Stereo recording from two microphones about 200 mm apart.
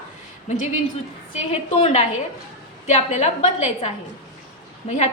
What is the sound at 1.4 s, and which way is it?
A woman's voice, 30° left (ahead or behind).